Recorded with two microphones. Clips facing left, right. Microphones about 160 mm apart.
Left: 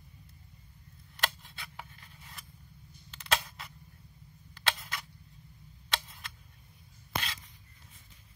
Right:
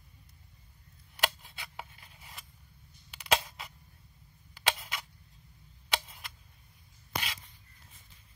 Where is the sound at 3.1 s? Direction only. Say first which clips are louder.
Right 3 dB; 10° right (ahead or behind).